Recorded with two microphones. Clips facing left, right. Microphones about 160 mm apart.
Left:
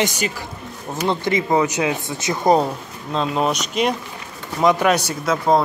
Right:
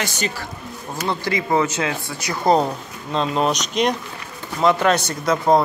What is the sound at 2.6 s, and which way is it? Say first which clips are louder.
Speech: even; centre (ahead or behind).